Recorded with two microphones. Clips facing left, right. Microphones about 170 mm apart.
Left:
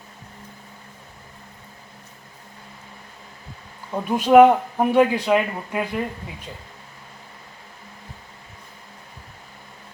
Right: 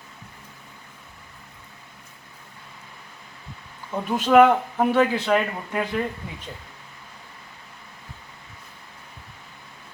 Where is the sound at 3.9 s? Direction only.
10° left (ahead or behind).